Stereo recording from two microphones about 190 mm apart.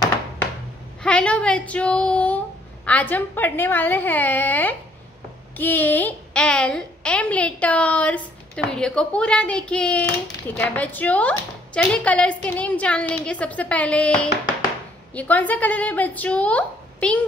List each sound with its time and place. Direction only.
1.0 s a woman's voice: 5° left (ahead or behind)